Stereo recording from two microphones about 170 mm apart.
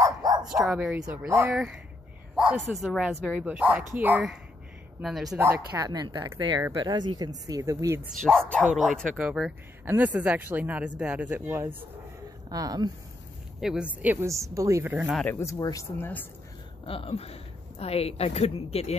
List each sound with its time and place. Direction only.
0.0 s dog: 25° right (ahead or behind)
0.4 s speech: 5° right (ahead or behind)
2.3 s a sound: 5° right (ahead or behind)
2.7 s speech: centre (ahead or behind)
5.4 s speech: 15° right (ahead or behind)
8.2 s speech: 5° left (ahead or behind); by 12.9 s 20° right (ahead or behind)
13.6 s speech: 5° right (ahead or behind)
15.0 s speech: centre (ahead or behind)
15.3 s speech: 20° left (ahead or behind)
16.8 s a woman's voice: 35° left (ahead or behind)